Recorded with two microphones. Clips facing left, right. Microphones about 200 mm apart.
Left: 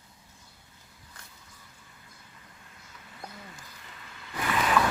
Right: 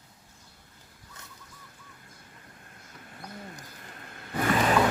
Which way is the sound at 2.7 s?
50° right (ahead or behind).